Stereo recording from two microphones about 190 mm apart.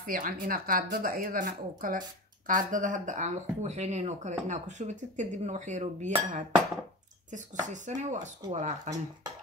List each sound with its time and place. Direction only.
0.0 s speech: 45° right (ahead or behind)